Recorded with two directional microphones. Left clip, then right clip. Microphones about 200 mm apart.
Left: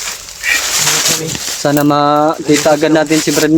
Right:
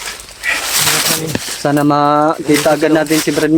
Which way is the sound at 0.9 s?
20° right (ahead or behind).